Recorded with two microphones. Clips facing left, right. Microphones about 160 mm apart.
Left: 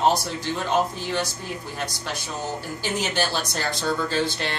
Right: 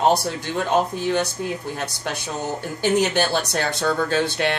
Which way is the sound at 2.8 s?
60° right (ahead or behind).